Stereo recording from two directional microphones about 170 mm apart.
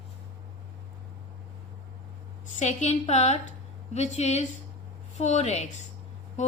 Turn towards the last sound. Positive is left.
turn(degrees=45)  # may be behind; listen again after turning